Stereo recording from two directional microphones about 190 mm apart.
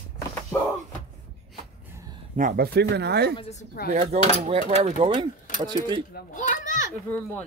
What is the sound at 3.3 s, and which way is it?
Speech, 35° left (ahead or behind).